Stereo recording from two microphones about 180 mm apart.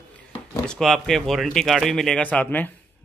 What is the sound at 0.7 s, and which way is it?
Speech, centre (ahead or behind).